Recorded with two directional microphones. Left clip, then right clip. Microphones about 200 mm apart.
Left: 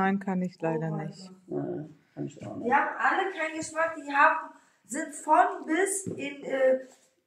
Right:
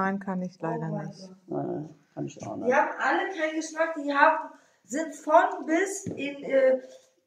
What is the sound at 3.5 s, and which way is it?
A woman's voice, 20° left (ahead or behind).